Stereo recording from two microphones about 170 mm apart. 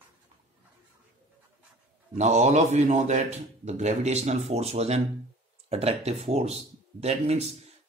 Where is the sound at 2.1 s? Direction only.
40° right (ahead or behind).